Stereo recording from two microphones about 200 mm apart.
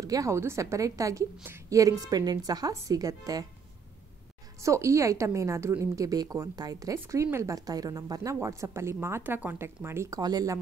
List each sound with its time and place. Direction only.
0.0 s a woman's voice: 15° right (ahead or behind)
4.6 s a woman's voice: 15° right (ahead or behind)